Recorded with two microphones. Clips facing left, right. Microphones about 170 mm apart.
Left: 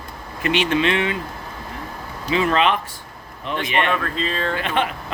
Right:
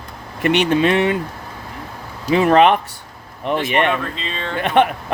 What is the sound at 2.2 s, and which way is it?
Speech, 50° right (ahead or behind).